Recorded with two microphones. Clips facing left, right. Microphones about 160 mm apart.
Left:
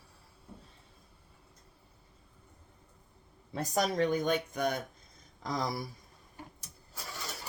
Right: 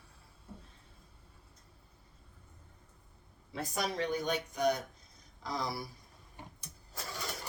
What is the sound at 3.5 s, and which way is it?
Speech, 45° left (ahead or behind).